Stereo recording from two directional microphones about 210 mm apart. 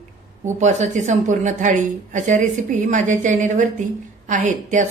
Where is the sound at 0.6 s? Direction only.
35° right (ahead or behind).